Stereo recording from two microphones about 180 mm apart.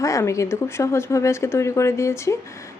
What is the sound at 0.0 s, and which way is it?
Speech, 15° left (ahead or behind).